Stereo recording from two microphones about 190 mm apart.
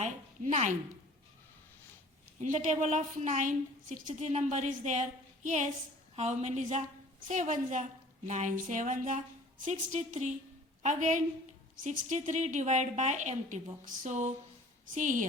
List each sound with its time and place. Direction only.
0.0 s a woman's voice: 40° right (ahead or behind)
2.4 s a woman's voice: 40° right (ahead or behind)